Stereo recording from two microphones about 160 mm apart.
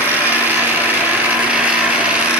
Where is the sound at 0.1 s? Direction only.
10° right (ahead or behind).